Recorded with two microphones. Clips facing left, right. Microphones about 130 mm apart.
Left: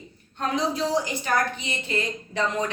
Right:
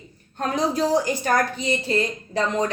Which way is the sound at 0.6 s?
45° right (ahead or behind).